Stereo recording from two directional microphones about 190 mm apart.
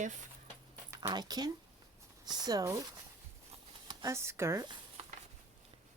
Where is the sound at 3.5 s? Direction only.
30° right (ahead or behind).